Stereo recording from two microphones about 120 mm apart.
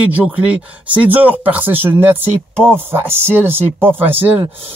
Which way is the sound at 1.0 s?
15° right (ahead or behind).